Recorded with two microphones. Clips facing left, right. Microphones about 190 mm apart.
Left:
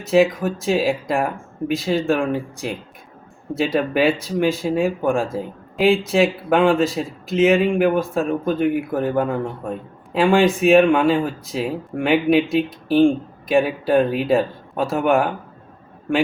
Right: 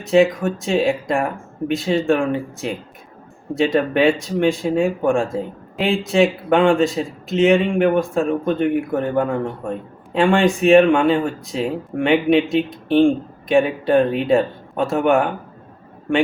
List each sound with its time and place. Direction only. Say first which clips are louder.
0.0 s speech: right 1 dB; centre (ahead or behind)